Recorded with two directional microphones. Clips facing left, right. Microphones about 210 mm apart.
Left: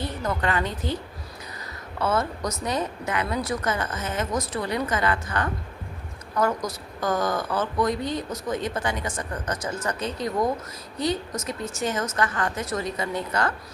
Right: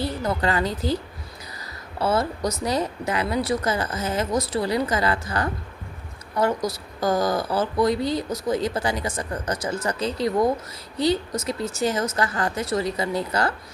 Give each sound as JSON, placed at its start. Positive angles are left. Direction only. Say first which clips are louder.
{"t": 0.0, "sound": "a woman's voice", "louder": "right 3 dB", "side_deg": -35}
{"t": 2.0, "sound": "a woman's voice", "louder": "right 2 dB", "side_deg": -35}